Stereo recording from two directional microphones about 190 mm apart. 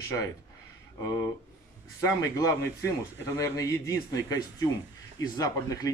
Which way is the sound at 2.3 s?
15° left (ahead or behind).